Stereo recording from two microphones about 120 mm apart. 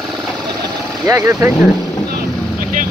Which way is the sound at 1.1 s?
25° right (ahead or behind).